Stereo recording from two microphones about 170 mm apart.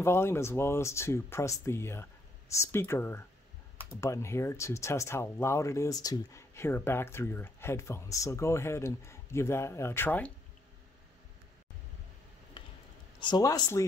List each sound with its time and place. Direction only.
0.0 s speech: 15° left (ahead or behind)
13.2 s speech: 25° left (ahead or behind)